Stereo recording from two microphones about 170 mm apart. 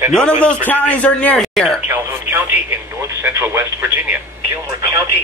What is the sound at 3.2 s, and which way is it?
Speech, 15° right (ahead or behind).